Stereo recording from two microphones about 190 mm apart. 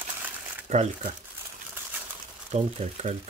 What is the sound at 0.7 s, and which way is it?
Speech, 35° right (ahead or behind).